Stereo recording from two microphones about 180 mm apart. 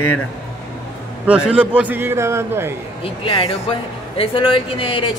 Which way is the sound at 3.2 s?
30° left (ahead or behind).